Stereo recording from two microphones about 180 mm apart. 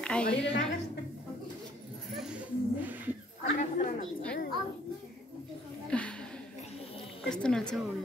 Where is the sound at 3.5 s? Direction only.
40° left (ahead or behind).